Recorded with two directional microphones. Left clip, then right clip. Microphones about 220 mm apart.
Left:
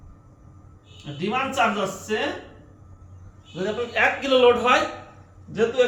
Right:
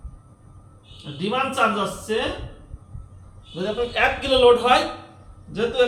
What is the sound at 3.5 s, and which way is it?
A man's voice, centre (ahead or behind).